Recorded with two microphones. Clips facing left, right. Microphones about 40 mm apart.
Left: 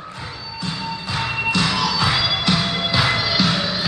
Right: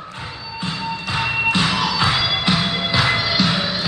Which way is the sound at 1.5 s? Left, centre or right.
Centre.